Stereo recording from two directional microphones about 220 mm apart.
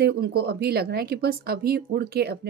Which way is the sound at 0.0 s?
45° right (ahead or behind).